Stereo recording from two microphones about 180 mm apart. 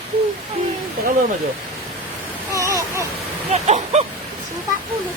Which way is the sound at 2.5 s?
15° right (ahead or behind).